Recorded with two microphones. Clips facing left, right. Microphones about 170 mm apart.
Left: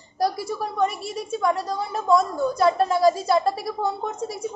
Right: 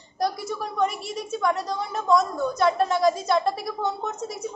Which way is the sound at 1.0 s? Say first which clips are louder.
Left 2 dB; 30° left (ahead or behind).